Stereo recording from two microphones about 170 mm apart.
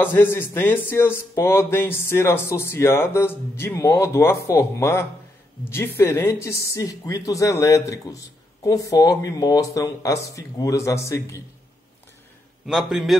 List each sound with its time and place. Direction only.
0.0 s speech: 15° left (ahead or behind)
12.6 s a man's voice: centre (ahead or behind)